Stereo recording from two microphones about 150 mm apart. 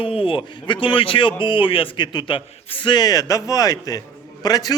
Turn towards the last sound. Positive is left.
turn(degrees=25)  # may be behind; listen again after turning